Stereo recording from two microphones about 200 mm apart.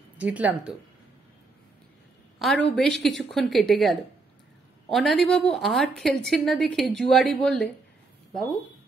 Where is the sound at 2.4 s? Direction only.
Centre (ahead or behind).